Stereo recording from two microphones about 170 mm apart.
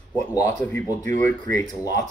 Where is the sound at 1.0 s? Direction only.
50° right (ahead or behind).